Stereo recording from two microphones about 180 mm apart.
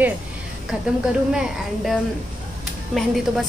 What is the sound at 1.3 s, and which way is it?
Speech, 5° right (ahead or behind).